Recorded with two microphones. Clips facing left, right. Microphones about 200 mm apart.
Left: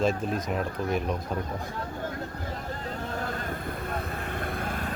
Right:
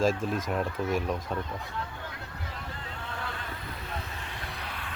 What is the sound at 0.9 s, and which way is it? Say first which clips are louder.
Speech: left 2 dB; centre (ahead or behind).